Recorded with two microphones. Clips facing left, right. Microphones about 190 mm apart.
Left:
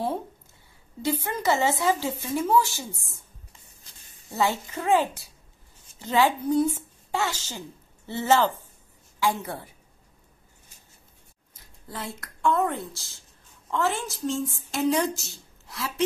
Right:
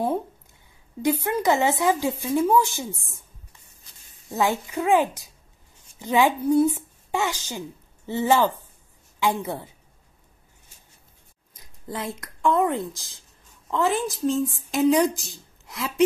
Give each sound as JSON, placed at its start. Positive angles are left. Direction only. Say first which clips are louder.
{"t": 1.2, "sound": "a woman's voice", "louder": "right 2 dB", "side_deg": -15}
{"t": 4.3, "sound": "a woman's voice", "louder": "right 2 dB", "side_deg": -15}
{"t": 11.5, "sound": "a woman's voice", "louder": "right 5 dB", "side_deg": -15}